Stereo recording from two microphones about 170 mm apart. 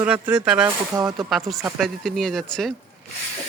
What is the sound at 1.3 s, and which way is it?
Speech, 5° right (ahead or behind).